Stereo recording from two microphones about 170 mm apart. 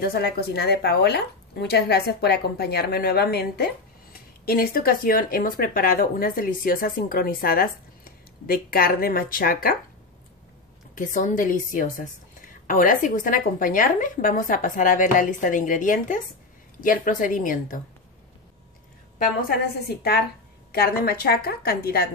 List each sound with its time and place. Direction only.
0.0 s speech: 65° left (ahead or behind)
11.0 s a woman's voice: 50° left (ahead or behind)
19.5 s a woman's voice: 70° left (ahead or behind)